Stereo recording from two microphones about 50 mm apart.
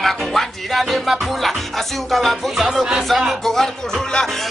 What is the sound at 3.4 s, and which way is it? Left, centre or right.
Speech, centre.